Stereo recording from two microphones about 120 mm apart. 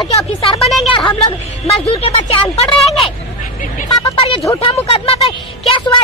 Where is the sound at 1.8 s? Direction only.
50° left (ahead or behind).